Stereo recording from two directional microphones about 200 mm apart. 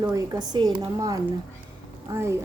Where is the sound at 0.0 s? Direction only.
20° right (ahead or behind).